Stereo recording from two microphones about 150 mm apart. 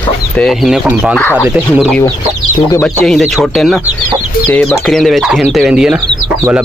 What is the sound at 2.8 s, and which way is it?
Speech, centre (ahead or behind).